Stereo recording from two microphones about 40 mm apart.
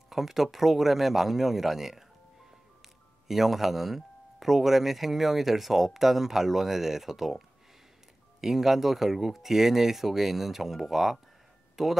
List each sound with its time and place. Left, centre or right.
0.1 s speech: centre